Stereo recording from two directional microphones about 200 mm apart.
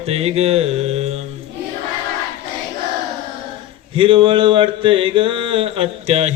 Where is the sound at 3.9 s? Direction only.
25° right (ahead or behind).